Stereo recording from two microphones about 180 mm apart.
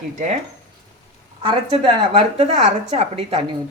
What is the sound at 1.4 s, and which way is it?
A woman's voice, 30° right (ahead or behind).